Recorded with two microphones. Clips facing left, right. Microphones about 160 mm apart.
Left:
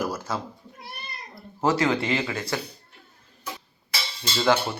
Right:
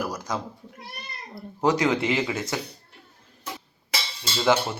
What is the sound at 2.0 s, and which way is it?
Speech, 15° right (ahead or behind).